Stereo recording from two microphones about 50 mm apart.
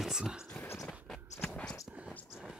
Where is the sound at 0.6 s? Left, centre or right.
Left.